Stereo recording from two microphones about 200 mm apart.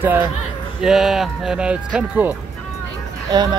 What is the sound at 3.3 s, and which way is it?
Speech, 20° right (ahead or behind).